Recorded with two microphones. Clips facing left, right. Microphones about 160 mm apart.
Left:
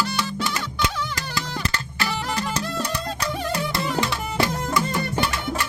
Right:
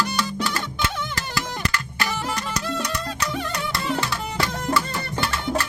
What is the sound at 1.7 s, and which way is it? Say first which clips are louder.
Music: even; 30° left (ahead or behind).